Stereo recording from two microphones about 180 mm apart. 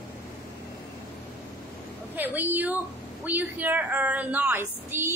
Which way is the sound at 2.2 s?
10° right (ahead or behind).